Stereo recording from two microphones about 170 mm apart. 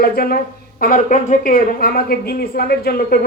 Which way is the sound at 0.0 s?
60° left (ahead or behind).